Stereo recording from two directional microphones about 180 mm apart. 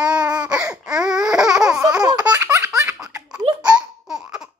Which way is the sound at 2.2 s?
10° right (ahead or behind).